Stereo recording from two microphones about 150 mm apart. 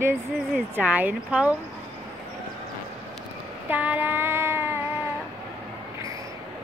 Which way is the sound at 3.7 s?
10° right (ahead or behind).